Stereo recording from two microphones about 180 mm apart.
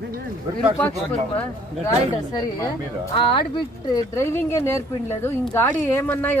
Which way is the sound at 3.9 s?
15° left (ahead or behind).